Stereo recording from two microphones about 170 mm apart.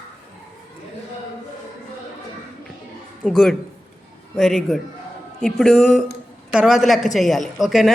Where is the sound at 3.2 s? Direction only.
5° left (ahead or behind).